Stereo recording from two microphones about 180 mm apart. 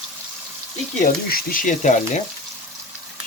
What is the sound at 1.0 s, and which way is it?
Speech, 50° left (ahead or behind).